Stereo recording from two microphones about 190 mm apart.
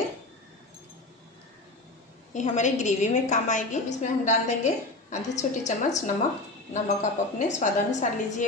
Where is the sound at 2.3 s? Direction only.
40° left (ahead or behind).